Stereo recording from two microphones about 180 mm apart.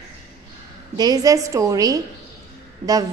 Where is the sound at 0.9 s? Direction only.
20° right (ahead or behind).